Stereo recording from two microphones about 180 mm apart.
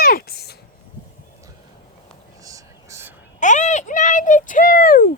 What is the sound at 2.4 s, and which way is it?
Whispering, 15° right (ahead or behind).